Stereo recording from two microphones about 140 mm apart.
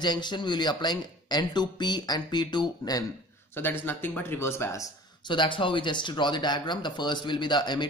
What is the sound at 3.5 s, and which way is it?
Speech, 15° left (ahead or behind).